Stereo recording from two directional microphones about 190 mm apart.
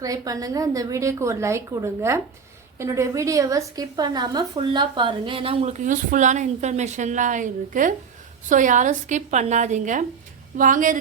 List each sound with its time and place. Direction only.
0.0 s a woman's voice: 20° right (ahead or behind); by 10.9 s 45° right (ahead or behind)